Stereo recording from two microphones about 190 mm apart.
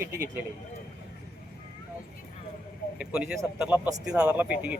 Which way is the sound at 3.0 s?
5° right (ahead or behind).